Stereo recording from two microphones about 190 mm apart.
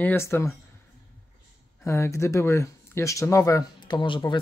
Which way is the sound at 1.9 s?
15° left (ahead or behind).